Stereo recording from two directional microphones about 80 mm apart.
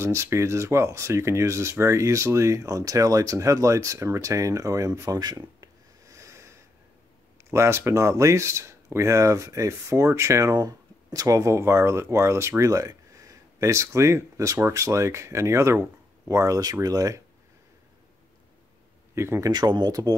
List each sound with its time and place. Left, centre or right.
0.0 s speech: right
19.1 s speech: right
19.5 s speech: right
19.9 s speech: right